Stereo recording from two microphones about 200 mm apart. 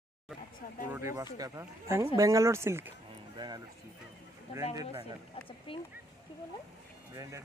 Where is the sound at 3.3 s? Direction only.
20° right (ahead or behind).